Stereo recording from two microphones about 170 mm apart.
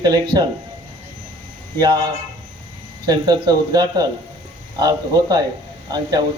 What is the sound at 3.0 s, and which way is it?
Speech, 25° right (ahead or behind).